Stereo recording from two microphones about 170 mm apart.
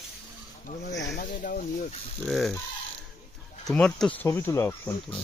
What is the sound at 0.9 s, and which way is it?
Snake, 90° left.